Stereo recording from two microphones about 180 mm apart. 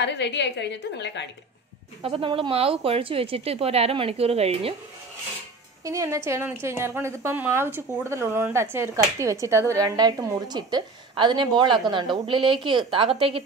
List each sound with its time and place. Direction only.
0.0 s a woman's voice: 75° left (ahead or behind)
2.0 s speech: 30° right (ahead or behind)
5.9 s a woman's voice: 15° right (ahead or behind)